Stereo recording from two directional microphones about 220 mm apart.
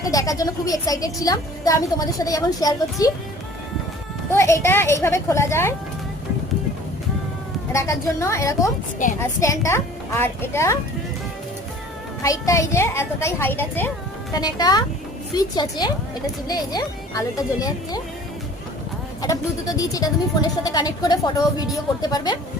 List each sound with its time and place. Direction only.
0.0 s a woman's voice: 15° left (ahead or behind)
4.3 s a woman's voice: 15° left (ahead or behind)
7.7 s a woman's voice: 15° left (ahead or behind)
9.0 s a woman's voice: 35° left (ahead or behind)
9.4 s a woman's voice: 15° left (ahead or behind)
12.2 s a woman's voice: 15° left (ahead or behind)
19.2 s a woman's voice: 15° left (ahead or behind)